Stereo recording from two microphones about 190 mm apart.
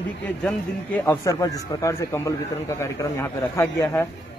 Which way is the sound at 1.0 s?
15° left (ahead or behind).